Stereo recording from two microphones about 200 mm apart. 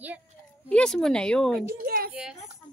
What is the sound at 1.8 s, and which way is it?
Speech, 50° right (ahead or behind).